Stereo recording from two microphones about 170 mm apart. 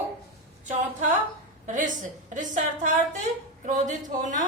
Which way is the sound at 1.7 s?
45° right (ahead or behind).